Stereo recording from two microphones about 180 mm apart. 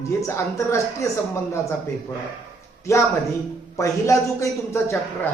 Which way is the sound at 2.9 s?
15° left (ahead or behind).